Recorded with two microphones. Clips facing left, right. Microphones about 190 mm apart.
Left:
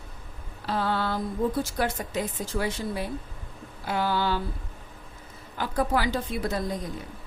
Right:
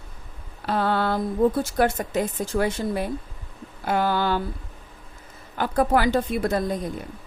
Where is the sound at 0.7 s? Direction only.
60° right (ahead or behind).